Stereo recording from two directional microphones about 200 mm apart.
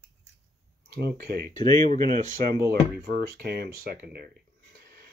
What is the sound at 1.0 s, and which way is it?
Speech, 50° right (ahead or behind).